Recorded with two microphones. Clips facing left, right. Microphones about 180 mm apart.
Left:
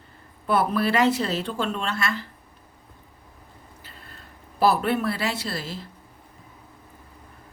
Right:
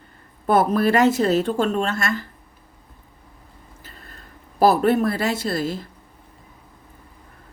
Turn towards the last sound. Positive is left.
turn(degrees=-50)  # may be behind; listen again after turning